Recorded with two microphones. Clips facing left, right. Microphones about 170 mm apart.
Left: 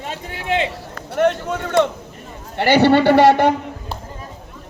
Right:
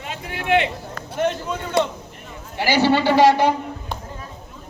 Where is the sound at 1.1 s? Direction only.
65° left (ahead or behind).